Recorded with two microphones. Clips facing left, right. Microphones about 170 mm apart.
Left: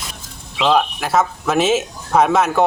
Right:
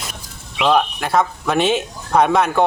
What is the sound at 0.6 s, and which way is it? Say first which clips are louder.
Speech: even; centre (ahead or behind).